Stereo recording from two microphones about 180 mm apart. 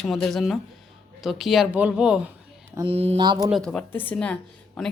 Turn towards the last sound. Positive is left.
turn(degrees=5)  # may be behind; listen again after turning